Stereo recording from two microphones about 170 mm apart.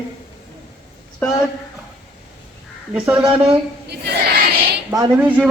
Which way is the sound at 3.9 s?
75° right (ahead or behind).